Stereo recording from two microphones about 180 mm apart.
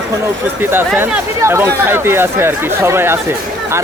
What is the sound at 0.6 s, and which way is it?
Speech, 10° right (ahead or behind).